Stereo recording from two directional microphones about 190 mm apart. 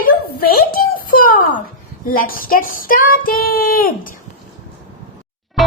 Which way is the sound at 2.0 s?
50° left (ahead or behind).